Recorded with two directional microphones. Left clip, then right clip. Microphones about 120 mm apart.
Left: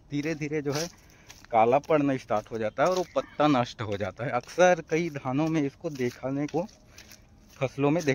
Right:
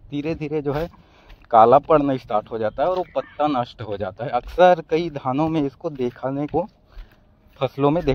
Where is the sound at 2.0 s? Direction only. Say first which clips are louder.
Right 6 dB; 25° right (ahead or behind).